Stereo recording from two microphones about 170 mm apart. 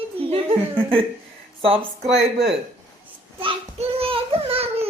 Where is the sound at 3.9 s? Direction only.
35° right (ahead or behind).